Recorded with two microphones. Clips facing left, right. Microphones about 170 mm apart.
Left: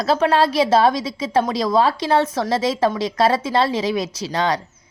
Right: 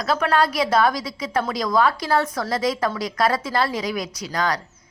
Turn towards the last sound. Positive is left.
turn(degrees=25)  # may be behind; listen again after turning